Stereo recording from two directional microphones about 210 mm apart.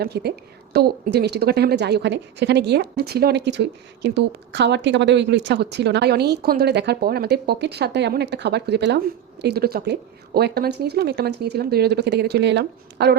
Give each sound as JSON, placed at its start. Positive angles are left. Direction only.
{"t": 0.0, "sound": "a woman's voice", "side_deg": -50}